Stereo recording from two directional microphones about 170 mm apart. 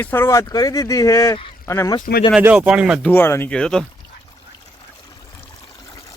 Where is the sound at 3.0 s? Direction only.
10° left (ahead or behind).